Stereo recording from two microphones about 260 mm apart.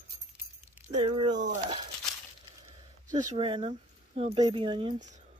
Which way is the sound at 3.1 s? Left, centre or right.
Right.